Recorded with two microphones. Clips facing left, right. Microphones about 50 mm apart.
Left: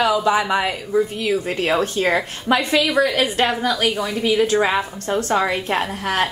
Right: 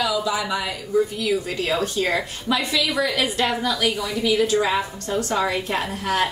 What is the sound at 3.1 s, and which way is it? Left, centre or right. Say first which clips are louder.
A woman's voice: left 3 dB; left.